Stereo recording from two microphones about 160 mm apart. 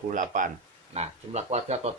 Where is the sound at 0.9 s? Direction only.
45° right (ahead or behind).